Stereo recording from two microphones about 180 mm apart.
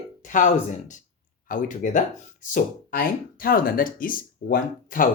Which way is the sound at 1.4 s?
45° left (ahead or behind).